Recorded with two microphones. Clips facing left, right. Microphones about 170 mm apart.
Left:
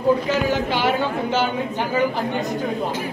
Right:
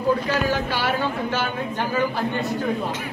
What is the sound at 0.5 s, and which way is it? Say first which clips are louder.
A man's voice: left 3 dB; 20° left (ahead or behind).